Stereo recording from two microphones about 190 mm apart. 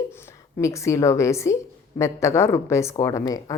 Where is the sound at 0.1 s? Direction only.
15° left (ahead or behind).